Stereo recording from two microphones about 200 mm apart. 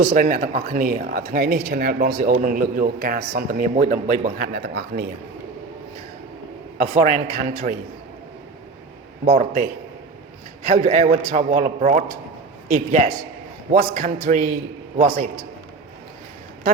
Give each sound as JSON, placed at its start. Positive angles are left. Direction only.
{"t": 0.0, "sound": "speech", "side_deg": -40}
{"t": 6.7, "sound": "a man's voice", "side_deg": -40}
{"t": 9.2, "sound": "a man's voice", "side_deg": -40}